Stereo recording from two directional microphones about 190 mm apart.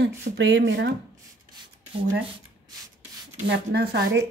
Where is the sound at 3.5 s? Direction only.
60° right (ahead or behind).